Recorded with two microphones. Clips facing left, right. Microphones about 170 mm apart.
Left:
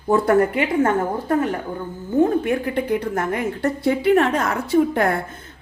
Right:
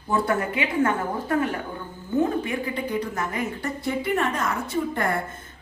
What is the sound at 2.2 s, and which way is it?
A woman's voice, 55° left (ahead or behind).